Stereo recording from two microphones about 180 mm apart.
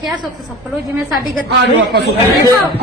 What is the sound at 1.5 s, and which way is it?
Speech, 75° right (ahead or behind).